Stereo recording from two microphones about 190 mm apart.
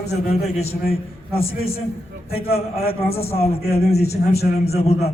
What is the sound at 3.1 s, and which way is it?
A man's voice, 30° left (ahead or behind).